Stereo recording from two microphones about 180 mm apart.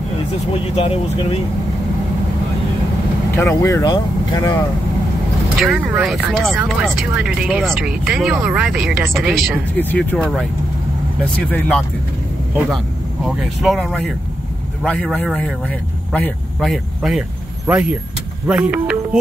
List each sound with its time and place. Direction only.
0.7 s speech: 35° left (ahead or behind)
3.3 s speech: 15° left (ahead or behind)
5.7 s speech: 10° right (ahead or behind)
11.4 s speech: 5° left (ahead or behind)